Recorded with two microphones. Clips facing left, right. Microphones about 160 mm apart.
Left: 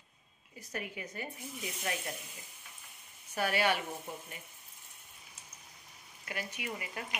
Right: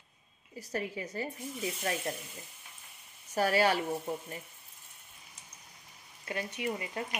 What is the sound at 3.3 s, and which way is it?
Speech, 35° right (ahead or behind).